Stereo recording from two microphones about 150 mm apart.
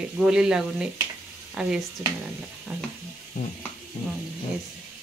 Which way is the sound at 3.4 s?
60° left (ahead or behind).